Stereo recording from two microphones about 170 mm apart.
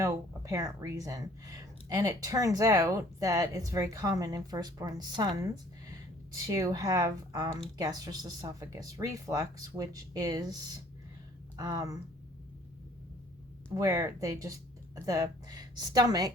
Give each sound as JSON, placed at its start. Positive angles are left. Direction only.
{"t": 0.0, "sound": "speech", "side_deg": -20}
{"t": 13.7, "sound": "speech", "side_deg": -20}